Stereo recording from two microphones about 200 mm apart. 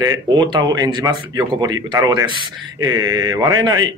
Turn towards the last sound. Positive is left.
turn(degrees=-20)  # may be behind; listen again after turning